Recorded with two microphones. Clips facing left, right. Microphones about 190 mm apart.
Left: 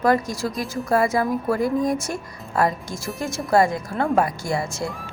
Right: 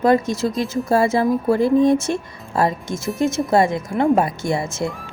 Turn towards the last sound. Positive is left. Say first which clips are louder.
# right 3 dB
turn(degrees=-20)  # may be behind; listen again after turning